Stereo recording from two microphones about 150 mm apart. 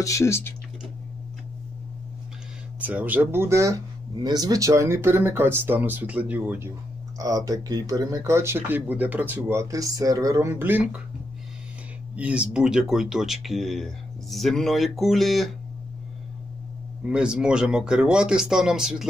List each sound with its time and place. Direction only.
0.0 s speech: 20° left (ahead or behind)
2.8 s speech: 10° right (ahead or behind)
7.2 s speech: 25° right (ahead or behind)
12.2 s speech: 10° right (ahead or behind)
17.1 s speech: 5° right (ahead or behind)